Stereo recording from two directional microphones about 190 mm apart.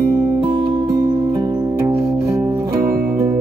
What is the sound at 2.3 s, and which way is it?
Music, 15° right (ahead or behind).